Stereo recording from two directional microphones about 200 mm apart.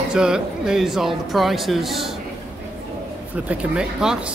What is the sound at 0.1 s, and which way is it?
Speech, 5° right (ahead or behind).